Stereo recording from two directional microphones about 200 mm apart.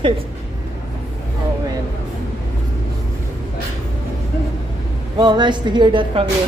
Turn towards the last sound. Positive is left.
turn(degrees=-25)  # may be behind; listen again after turning